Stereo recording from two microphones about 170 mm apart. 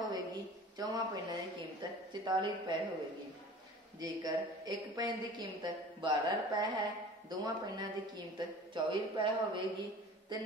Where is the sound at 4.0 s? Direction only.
25° right (ahead or behind).